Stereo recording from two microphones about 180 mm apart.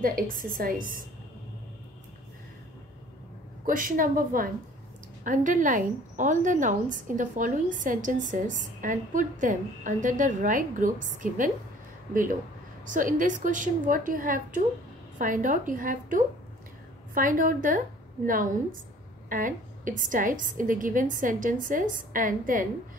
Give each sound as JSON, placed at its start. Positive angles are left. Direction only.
{"t": 0.0, "sound": "a woman's voice", "side_deg": -50}
{"t": 3.6, "sound": "a woman's voice", "side_deg": -50}